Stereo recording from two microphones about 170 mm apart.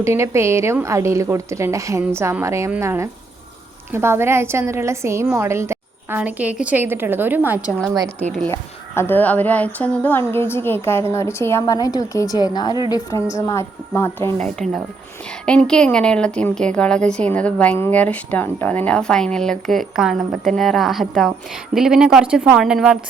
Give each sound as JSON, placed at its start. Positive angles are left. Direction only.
{"t": 0.0, "sound": "a woman's voice", "side_deg": -15}
{"t": 9.0, "sound": "a woman's voice", "side_deg": 10}
{"t": 15.4, "sound": "speech", "side_deg": 5}